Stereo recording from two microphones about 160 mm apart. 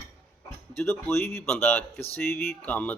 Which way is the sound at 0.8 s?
15° left (ahead or behind).